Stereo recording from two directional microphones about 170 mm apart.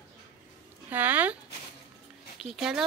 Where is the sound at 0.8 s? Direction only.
10° right (ahead or behind).